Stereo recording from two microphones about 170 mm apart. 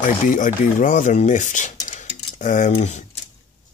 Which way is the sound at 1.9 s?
45° left (ahead or behind).